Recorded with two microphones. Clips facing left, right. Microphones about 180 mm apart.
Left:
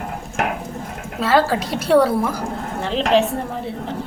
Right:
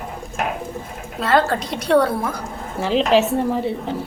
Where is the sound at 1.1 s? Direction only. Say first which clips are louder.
Left 1 dB; centre (ahead or behind).